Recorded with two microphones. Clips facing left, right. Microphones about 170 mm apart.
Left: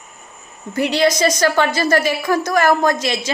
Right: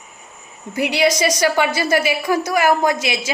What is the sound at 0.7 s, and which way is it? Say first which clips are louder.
A woman's voice: left 1 dB; 10° right (ahead or behind).